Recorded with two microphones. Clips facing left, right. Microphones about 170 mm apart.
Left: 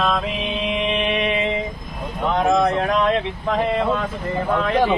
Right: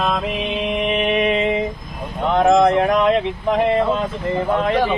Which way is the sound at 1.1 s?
45° right (ahead or behind).